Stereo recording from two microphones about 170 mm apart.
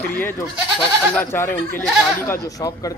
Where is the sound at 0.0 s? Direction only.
10° left (ahead or behind).